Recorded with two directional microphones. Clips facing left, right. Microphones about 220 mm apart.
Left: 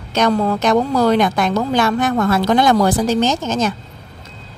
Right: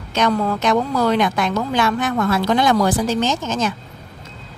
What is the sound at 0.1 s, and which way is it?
Speech, 35° left (ahead or behind).